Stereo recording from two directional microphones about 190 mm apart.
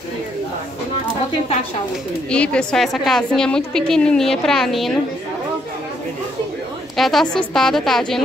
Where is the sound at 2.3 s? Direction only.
5° left (ahead or behind).